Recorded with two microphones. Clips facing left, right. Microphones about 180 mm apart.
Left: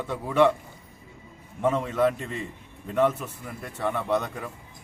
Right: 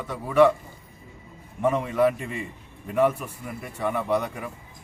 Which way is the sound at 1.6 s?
10° right (ahead or behind).